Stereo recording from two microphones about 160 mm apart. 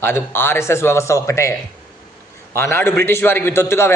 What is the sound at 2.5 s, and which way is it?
A man's voice, 15° left (ahead or behind).